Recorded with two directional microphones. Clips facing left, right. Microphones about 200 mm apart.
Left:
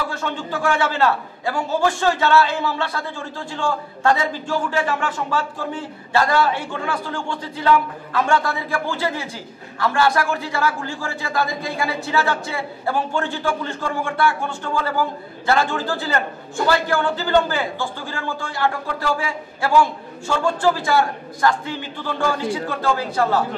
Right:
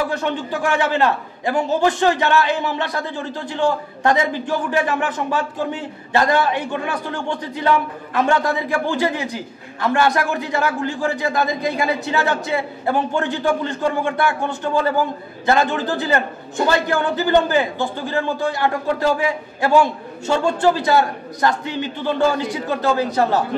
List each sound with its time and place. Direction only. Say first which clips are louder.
0.1 s a man's voice: right 4 dB; 20° right (ahead or behind)